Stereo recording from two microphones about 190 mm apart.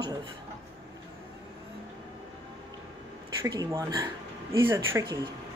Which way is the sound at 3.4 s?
20° right (ahead or behind).